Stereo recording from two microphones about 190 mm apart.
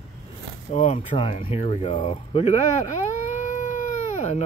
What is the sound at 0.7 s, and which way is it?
Speech, 35° left (ahead or behind).